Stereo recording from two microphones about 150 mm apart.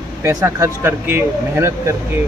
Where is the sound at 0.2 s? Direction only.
20° right (ahead or behind).